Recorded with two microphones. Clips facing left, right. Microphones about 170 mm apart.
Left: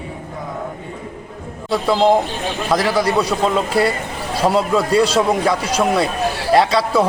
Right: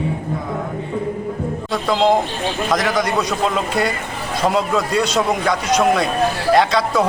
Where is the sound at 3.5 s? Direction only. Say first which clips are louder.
Left 3 dB; 30° left (ahead or behind).